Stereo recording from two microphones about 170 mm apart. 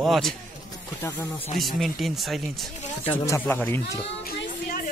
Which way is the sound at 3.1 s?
15° left (ahead or behind).